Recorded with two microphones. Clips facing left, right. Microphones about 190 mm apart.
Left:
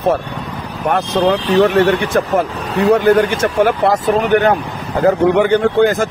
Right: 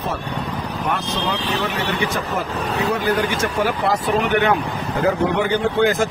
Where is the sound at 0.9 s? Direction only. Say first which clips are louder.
Left 11 dB; 55° left (ahead or behind).